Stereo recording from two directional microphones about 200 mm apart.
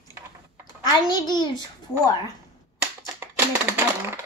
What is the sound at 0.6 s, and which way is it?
Speech, 20° left (ahead or behind).